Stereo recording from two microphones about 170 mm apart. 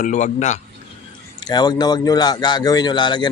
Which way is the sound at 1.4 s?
25° left (ahead or behind).